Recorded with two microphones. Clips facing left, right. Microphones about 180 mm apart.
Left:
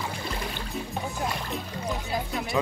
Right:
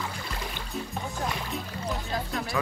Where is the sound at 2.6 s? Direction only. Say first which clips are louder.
Left 4 dB; 20° left (ahead or behind).